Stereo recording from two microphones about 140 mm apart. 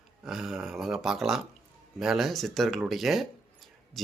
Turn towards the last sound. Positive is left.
turn(degrees=0)  # may be behind; listen again after turning